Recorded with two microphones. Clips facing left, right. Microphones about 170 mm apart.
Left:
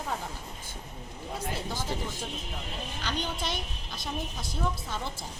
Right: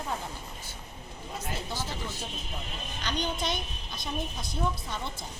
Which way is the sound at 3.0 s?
5° left (ahead or behind).